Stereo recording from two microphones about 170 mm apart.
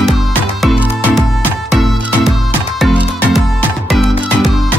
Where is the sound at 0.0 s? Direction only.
Centre (ahead or behind).